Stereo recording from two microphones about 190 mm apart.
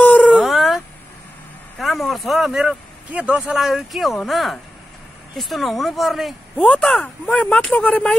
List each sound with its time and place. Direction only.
0.0 s howl: 10° left (ahead or behind)
1.8 s speech: centre (ahead or behind)